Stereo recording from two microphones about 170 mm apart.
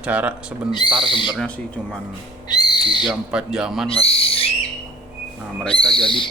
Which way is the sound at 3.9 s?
35° left (ahead or behind).